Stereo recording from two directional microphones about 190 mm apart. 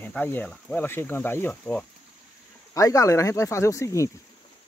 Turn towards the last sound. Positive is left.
turn(degrees=15)  # may be behind; listen again after turning